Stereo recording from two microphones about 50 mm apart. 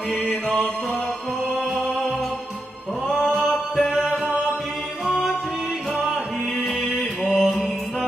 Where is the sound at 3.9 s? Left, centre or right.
Centre.